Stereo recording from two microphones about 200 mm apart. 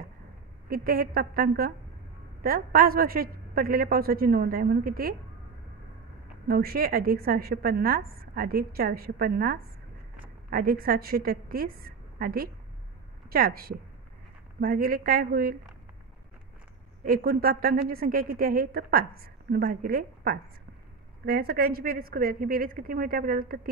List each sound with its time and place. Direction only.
0.7 s a woman's voice: 50° right (ahead or behind)
6.4 s a woman's voice: 50° right (ahead or behind)
17.0 s a woman's voice: 45° right (ahead or behind)